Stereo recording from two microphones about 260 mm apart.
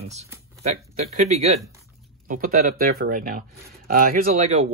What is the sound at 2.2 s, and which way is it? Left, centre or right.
Speech, right.